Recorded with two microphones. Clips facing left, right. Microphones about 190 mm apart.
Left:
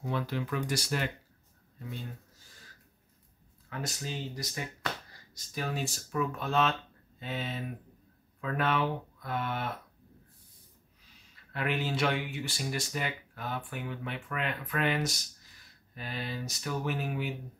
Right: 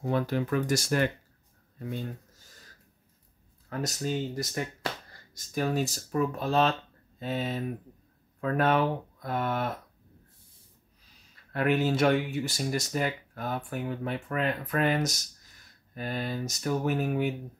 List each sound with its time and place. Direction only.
0.0 s speech: 45° right (ahead or behind)
3.6 s speech: 40° right (ahead or behind)
11.5 s speech: 45° right (ahead or behind)